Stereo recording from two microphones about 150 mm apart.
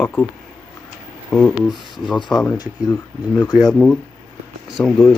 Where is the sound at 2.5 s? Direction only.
25° left (ahead or behind).